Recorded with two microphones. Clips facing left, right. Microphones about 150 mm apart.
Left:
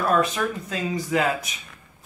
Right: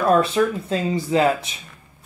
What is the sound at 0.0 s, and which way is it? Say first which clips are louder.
Speech: right 5 dB; 30° right (ahead or behind).